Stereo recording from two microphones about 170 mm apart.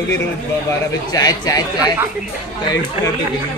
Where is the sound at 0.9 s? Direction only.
20° left (ahead or behind).